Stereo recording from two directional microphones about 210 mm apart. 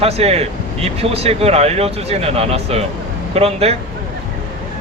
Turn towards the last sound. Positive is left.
turn(degrees=-30)  # may be behind; listen again after turning